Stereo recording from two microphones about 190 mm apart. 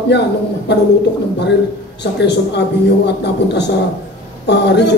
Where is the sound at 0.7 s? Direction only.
65° left (ahead or behind).